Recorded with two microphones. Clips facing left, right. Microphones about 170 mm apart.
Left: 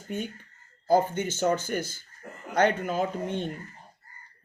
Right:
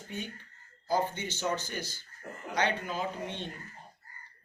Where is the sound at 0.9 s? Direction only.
50° left (ahead or behind).